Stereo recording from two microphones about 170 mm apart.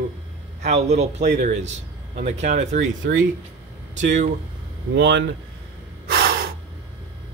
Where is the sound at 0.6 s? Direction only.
40° right (ahead or behind).